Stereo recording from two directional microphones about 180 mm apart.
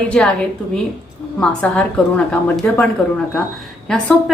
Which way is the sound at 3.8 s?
5° left (ahead or behind).